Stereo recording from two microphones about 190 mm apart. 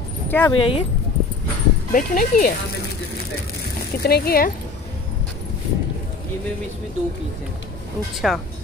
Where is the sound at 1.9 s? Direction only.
45° left (ahead or behind).